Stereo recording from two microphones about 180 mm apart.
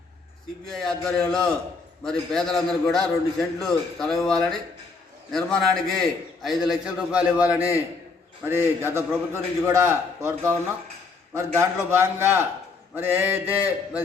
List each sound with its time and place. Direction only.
0.7 s a man's voice: 5° left (ahead or behind)
8.8 s a man's voice: 15° right (ahead or behind)